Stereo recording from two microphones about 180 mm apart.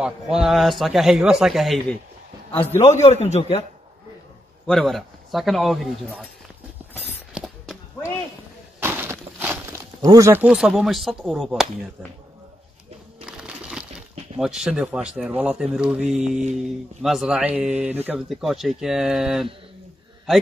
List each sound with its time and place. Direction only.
0.0 s speech: 5° right (ahead or behind)
2.5 s a man's voice: 10° left (ahead or behind)
2.8 s a man's voice: 40° left (ahead or behind)
4.6 s speech: centre (ahead or behind)
7.3 s a sound: 5° right (ahead or behind)
8.7 s walk: 10° right (ahead or behind)
13.2 s a sound: 5° right (ahead or behind)
14.4 s speech: centre (ahead or behind)